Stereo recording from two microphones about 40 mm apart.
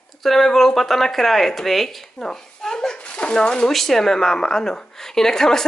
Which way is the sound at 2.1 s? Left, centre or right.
Centre.